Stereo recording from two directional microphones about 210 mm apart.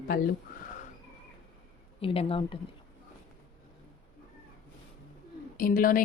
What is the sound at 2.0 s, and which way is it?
Speech, 25° left (ahead or behind).